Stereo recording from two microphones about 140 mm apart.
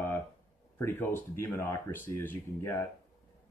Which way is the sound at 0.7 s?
15° left (ahead or behind).